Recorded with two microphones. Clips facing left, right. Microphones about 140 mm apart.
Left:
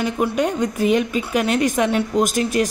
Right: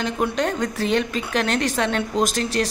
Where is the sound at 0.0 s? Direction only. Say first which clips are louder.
Left 3 dB; 5° left (ahead or behind).